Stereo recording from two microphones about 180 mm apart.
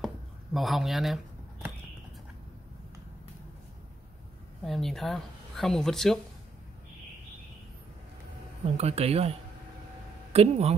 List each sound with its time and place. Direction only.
0.0 s a sound: centre (ahead or behind)
4.6 s speech: centre (ahead or behind)
8.7 s speech: 35° right (ahead or behind)